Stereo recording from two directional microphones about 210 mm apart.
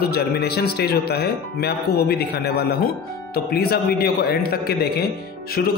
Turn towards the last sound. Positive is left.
turn(degrees=45)  # may be behind; listen again after turning